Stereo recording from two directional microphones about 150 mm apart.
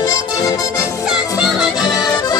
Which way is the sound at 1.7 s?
25° left (ahead or behind).